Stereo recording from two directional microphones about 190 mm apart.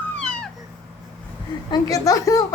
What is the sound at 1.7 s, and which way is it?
Speech, 20° left (ahead or behind).